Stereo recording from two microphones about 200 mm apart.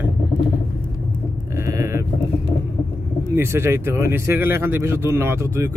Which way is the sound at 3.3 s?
10° right (ahead or behind).